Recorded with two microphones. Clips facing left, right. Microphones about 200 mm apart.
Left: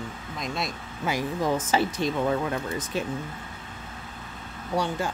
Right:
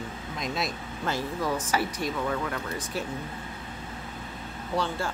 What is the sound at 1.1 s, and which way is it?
Speech, 15° left (ahead or behind).